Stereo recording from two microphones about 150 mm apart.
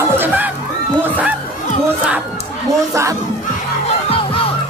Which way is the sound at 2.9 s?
20° right (ahead or behind).